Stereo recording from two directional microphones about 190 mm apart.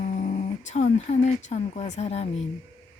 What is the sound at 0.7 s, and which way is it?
Speech, 35° left (ahead or behind).